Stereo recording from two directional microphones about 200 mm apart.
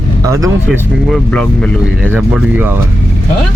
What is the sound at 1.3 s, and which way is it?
Speech, 5° left (ahead or behind).